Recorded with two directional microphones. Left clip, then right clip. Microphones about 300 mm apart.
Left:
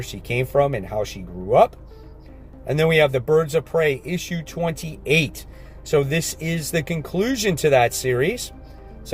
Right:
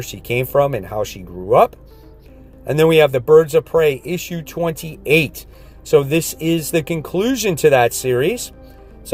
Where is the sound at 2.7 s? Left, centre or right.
Right.